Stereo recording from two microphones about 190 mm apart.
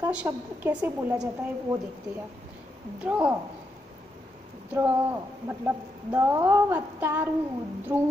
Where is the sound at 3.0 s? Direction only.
5° right (ahead or behind).